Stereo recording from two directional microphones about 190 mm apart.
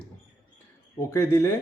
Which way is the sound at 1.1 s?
15° left (ahead or behind).